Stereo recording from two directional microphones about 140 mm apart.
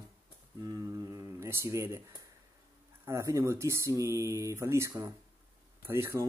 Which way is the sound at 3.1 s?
20° right (ahead or behind).